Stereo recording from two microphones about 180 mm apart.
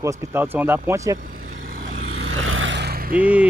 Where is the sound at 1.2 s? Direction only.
50° right (ahead or behind).